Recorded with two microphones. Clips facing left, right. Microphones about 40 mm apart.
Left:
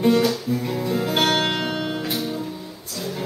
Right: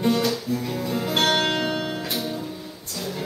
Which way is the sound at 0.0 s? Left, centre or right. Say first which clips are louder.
Left 4 dB; centre.